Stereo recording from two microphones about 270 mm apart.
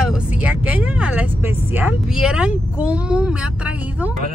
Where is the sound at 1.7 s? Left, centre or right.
Centre.